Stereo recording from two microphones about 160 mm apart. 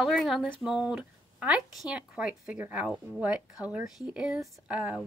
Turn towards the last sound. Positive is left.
turn(degrees=-5)  # may be behind; listen again after turning